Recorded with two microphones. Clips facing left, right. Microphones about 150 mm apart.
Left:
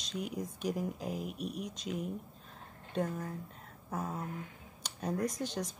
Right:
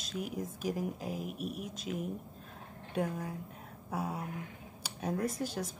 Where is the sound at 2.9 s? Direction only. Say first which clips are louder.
Even; 10° right (ahead or behind).